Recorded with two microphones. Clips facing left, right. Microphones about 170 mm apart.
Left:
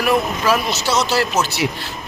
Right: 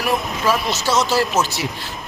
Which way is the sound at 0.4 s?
Centre (ahead or behind).